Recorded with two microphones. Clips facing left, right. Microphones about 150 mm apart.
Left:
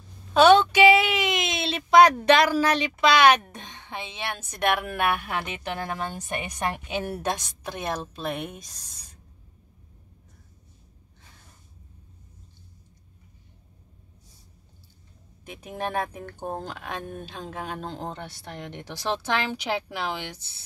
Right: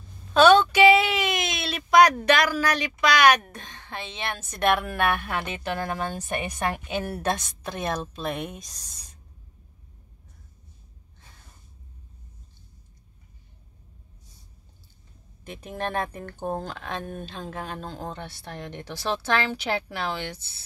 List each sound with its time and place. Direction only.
0.3 s a sound: 15° left (ahead or behind)
2.2 s a woman's voice: 25° left (ahead or behind); by 8.9 s 5° left (ahead or behind)
15.4 s a woman's voice: 10° left (ahead or behind)